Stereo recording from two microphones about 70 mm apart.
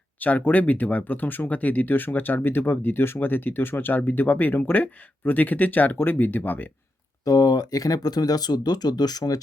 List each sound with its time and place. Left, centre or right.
0.2 s speech: left
7.3 s speech: left